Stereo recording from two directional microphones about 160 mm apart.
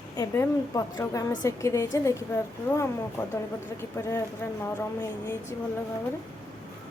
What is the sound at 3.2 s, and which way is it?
A woman's voice, 15° left (ahead or behind).